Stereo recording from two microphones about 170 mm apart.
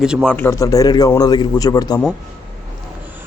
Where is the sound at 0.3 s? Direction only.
10° left (ahead or behind).